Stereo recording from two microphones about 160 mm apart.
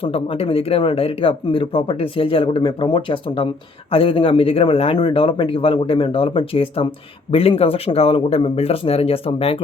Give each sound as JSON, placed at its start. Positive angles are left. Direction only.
{"t": 0.0, "sound": "speech", "side_deg": 35}